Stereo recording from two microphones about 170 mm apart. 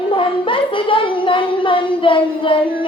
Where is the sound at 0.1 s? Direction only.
30° left (ahead or behind).